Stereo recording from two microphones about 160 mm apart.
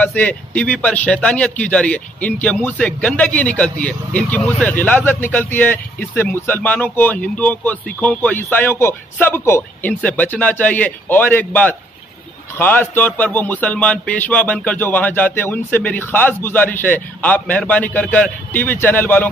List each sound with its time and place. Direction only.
0.0 s a man's voice: 10° left (ahead or behind)